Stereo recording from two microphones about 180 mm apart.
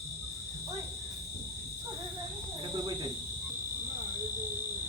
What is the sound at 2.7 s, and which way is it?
Cricket, 20° right (ahead or behind).